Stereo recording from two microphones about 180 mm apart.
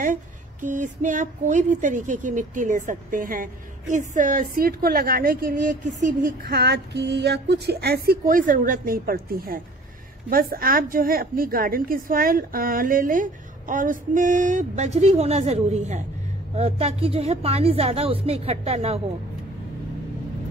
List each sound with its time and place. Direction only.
0.0 s a woman's voice: 45° right (ahead or behind)